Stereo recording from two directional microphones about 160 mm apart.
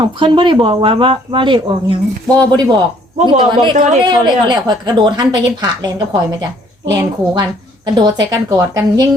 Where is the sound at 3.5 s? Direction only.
30° right (ahead or behind).